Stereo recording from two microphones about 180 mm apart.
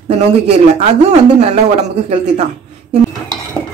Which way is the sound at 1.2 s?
35° right (ahead or behind).